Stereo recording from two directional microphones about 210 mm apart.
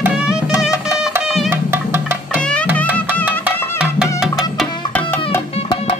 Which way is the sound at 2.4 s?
5° left (ahead or behind).